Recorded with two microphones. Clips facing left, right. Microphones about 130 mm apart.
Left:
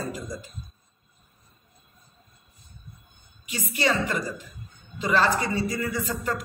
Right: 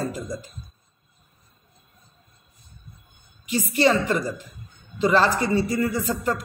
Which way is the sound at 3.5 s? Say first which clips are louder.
Right 6 dB; 30° right (ahead or behind).